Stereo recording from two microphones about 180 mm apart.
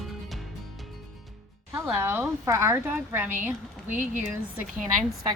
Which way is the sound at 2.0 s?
10° right (ahead or behind).